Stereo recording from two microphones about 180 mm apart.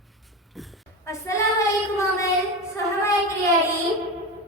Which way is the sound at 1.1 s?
15° left (ahead or behind).